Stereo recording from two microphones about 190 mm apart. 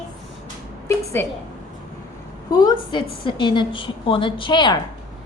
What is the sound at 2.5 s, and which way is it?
A woman's voice, 20° left (ahead or behind).